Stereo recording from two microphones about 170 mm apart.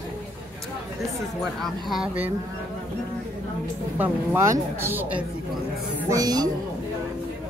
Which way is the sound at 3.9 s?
10° right (ahead or behind).